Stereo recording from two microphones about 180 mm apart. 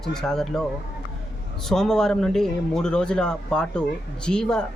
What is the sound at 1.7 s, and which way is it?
A man's voice, 5° left (ahead or behind).